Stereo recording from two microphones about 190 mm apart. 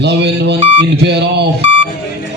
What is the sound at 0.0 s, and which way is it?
Mantra, 60° right (ahead or behind).